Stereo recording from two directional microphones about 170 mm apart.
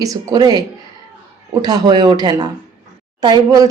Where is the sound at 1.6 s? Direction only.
25° right (ahead or behind).